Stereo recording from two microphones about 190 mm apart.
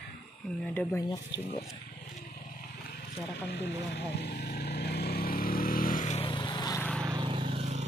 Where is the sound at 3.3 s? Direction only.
60° left (ahead or behind); by 6.3 s 40° left (ahead or behind).